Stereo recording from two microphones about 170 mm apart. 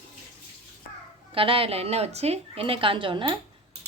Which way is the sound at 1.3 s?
30° right (ahead or behind).